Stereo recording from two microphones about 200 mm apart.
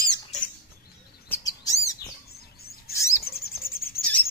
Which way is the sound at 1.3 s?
15° left (ahead or behind).